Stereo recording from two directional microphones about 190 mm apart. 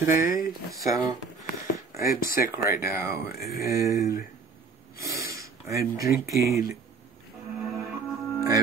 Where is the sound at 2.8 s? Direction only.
15° right (ahead or behind).